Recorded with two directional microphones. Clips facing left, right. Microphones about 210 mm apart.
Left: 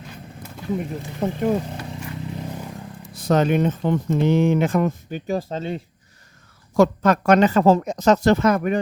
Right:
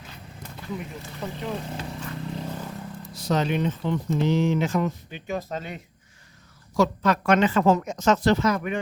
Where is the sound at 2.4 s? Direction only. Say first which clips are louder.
Left 1 dB; 10° left (ahead or behind).